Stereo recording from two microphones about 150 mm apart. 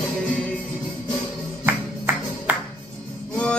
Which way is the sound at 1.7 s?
10° right (ahead or behind).